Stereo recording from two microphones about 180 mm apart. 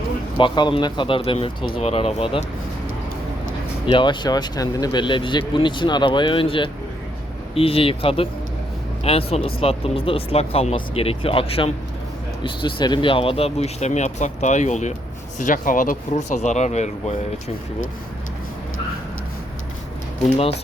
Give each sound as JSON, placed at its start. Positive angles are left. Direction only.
{"t": 0.3, "sound": "speech", "side_deg": 25}
{"t": 3.8, "sound": "speech", "side_deg": 25}